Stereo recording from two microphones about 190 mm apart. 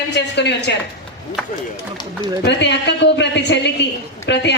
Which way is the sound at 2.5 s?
65° left (ahead or behind).